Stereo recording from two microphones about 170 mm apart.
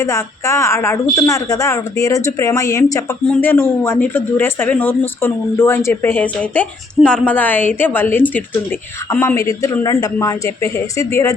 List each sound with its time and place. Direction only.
0.0 s a woman's voice: 20° left (ahead or behind)